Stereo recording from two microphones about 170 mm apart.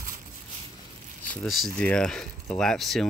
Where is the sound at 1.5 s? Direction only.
Centre (ahead or behind).